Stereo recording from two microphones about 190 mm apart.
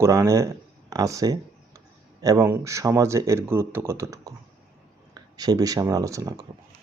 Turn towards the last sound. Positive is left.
turn(degrees=-20)  # may be behind; listen again after turning